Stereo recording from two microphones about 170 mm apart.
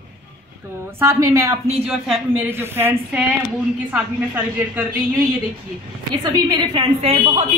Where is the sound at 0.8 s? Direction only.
15° right (ahead or behind).